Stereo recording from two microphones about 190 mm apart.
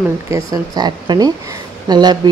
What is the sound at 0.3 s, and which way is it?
A woman's voice, 20° right (ahead or behind).